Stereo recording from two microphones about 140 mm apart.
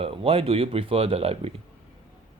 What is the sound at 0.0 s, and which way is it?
Speech, 40° right (ahead or behind).